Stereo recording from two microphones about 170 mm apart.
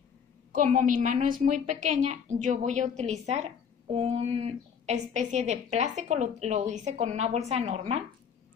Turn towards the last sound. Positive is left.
turn(degrees=-35)  # may be behind; listen again after turning